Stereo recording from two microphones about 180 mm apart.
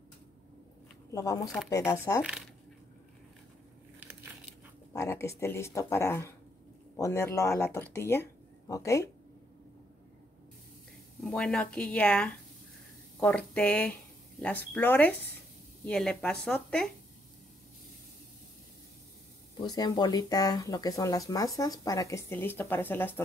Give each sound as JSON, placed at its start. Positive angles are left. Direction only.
{"t": 1.1, "sound": "speech", "side_deg": 20}
{"t": 4.0, "sound": "biting", "side_deg": -10}
{"t": 4.9, "sound": "speech", "side_deg": 15}
{"t": 11.1, "sound": "a woman's voice", "side_deg": 5}
{"t": 19.6, "sound": "speech", "side_deg": 20}